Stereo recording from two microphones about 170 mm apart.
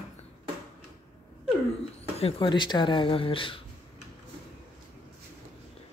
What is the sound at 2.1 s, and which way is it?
Speech, 35° left (ahead or behind).